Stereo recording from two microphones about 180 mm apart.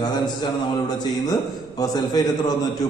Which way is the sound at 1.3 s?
20° left (ahead or behind).